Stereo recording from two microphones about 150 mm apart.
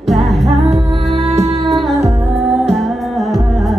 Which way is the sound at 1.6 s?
Centre (ahead or behind).